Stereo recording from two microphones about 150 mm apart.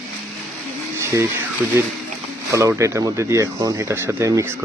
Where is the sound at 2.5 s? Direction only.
20° right (ahead or behind).